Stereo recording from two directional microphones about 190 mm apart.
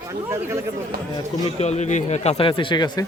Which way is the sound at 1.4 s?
35° left (ahead or behind).